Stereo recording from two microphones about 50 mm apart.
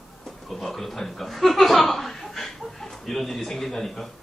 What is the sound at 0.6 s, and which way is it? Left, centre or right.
Speech, centre.